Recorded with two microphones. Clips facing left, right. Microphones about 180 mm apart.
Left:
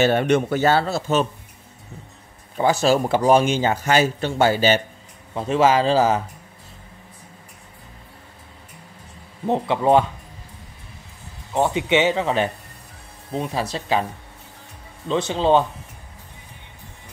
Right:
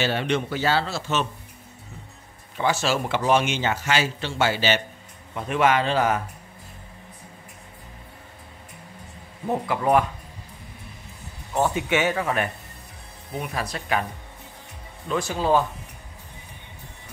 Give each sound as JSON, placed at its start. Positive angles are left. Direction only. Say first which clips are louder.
{"t": 0.0, "sound": "a man's voice", "louder": "left 7 dB", "side_deg": 50}
{"t": 2.5, "sound": "a man's voice", "louder": "left 6 dB", "side_deg": 40}
{"t": 5.3, "sound": "speech", "louder": "left 4 dB", "side_deg": 30}
{"t": 9.5, "sound": "speech", "louder": "left 4 dB", "side_deg": 25}
{"t": 11.5, "sound": "speech", "louder": "left 4 dB", "side_deg": 20}
{"t": 15.0, "sound": "speech", "louder": "left 4 dB", "side_deg": 20}